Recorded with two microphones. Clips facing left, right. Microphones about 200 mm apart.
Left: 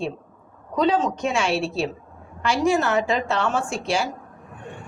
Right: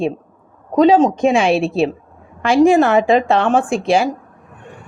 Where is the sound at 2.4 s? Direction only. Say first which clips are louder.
Right 9 dB; 55° right (ahead or behind).